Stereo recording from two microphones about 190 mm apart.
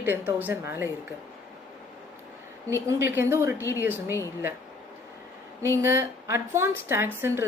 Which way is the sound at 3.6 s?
15° left (ahead or behind).